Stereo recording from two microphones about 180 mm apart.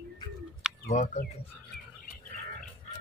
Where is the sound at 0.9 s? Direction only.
40° left (ahead or behind).